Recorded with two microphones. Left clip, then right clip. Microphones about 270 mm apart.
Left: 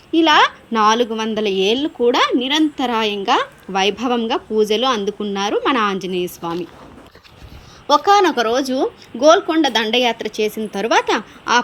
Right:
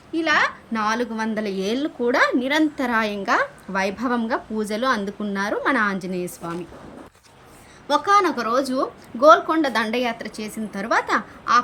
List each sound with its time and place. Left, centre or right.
0.1 s a woman's voice: centre
7.9 s a woman's voice: centre